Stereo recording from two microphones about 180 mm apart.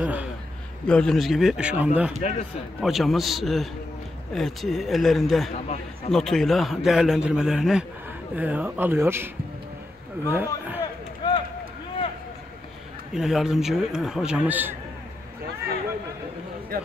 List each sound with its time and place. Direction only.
0.0 s a sound: 10° right (ahead or behind)
0.8 s speech: 5° left (ahead or behind)
2.2 s a man's voice: 35° left (ahead or behind)
2.8 s speech: centre (ahead or behind)
5.5 s a man's voice: 35° left (ahead or behind)
6.1 s speech: centre (ahead or behind); by 9.3 s 15° right (ahead or behind)
10.3 s speech: 10° right (ahead or behind)
11.2 s run: 25° left (ahead or behind)
13.1 s speech: centre (ahead or behind)
16.7 s speech: 55° right (ahead or behind)